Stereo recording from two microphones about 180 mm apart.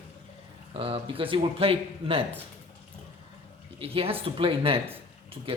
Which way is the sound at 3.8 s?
30° right (ahead or behind).